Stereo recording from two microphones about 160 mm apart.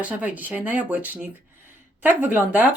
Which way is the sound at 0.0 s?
10° right (ahead or behind).